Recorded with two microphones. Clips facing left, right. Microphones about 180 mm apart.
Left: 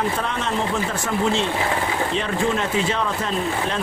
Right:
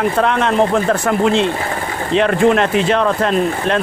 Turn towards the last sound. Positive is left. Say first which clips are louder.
# right 8 dB
turn(degrees=-70)  # may be behind; listen again after turning